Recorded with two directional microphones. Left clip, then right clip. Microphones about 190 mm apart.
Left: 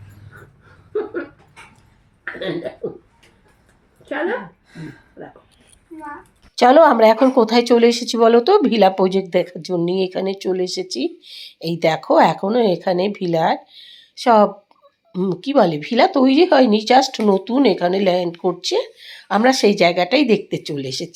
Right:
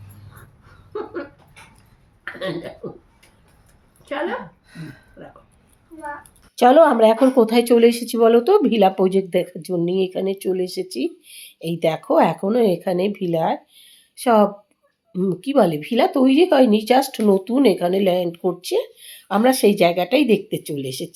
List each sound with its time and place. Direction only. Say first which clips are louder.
2.8 s speech: left 6 dB; 15° right (ahead or behind)
6.6 s speech: left 2 dB; centre (ahead or behind)